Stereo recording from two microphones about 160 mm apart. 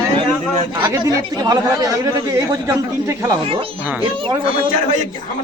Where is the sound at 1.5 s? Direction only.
20° right (ahead or behind).